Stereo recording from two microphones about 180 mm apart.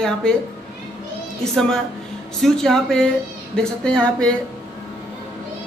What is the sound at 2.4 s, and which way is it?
A man's voice, centre (ahead or behind).